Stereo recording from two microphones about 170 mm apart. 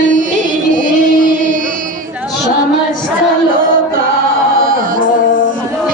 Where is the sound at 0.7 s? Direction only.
55° right (ahead or behind).